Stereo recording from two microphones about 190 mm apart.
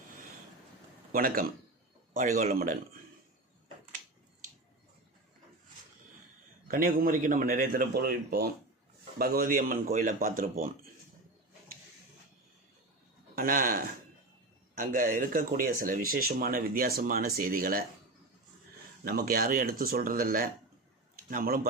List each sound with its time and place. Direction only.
1.1 s speech: 50° right (ahead or behind)
6.7 s speech: 45° right (ahead or behind)
13.3 s speech: 50° right (ahead or behind)
19.0 s speech: 55° right (ahead or behind)